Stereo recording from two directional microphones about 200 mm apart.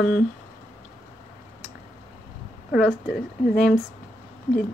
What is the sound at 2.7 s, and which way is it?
Speech, 5° right (ahead or behind).